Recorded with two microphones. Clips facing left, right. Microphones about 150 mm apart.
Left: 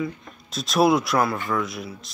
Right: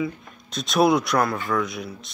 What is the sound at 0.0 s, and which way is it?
Speech, centre (ahead or behind).